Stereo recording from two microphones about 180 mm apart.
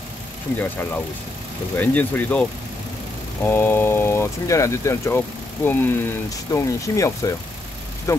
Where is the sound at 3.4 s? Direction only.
15° left (ahead or behind).